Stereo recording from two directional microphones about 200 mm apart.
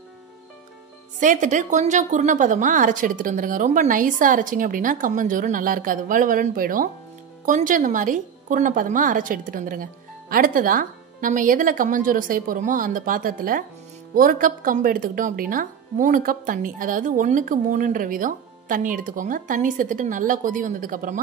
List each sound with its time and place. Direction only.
1.2 s a woman's voice: 40° right (ahead or behind)